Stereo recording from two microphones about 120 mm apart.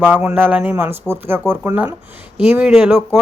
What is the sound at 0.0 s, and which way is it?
Speech, 15° right (ahead or behind).